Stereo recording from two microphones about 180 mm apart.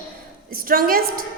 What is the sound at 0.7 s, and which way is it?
Speech, 50° right (ahead or behind).